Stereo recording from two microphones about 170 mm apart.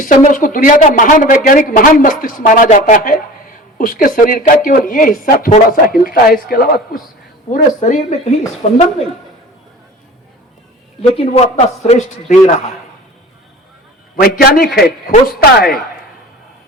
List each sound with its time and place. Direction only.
0.3 s speech: 55° left (ahead or behind)
7.5 s speech: 50° left (ahead or behind)
11.1 s speech: 40° left (ahead or behind)
14.2 s speech: 60° left (ahead or behind)